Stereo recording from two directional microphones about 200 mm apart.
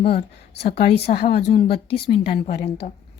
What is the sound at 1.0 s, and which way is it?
Speech, 50° left (ahead or behind).